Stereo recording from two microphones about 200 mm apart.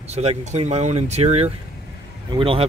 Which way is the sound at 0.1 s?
30° right (ahead or behind).